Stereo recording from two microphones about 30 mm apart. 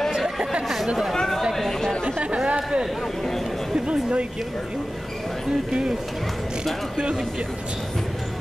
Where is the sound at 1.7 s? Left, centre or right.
Centre.